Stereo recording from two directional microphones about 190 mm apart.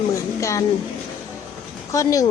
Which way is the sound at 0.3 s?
15° left (ahead or behind).